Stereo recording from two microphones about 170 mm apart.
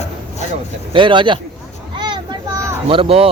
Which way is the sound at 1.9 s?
25° right (ahead or behind).